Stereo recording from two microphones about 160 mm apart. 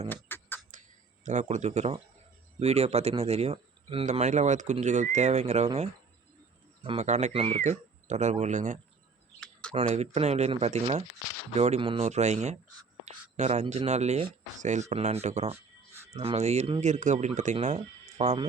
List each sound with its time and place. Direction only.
0.1 s beatboxing: 10° left (ahead or behind)
1.2 s speech: 45° right (ahead or behind)
9.4 s a sound: 5° left (ahead or behind)
9.7 s speech: 45° right (ahead or behind)